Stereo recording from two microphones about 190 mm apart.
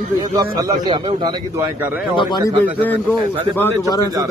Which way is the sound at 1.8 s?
10° right (ahead or behind).